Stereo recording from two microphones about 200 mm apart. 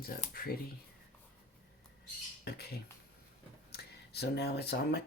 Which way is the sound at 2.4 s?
50° left (ahead or behind).